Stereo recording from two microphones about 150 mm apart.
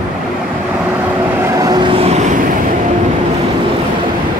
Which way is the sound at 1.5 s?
25° right (ahead or behind).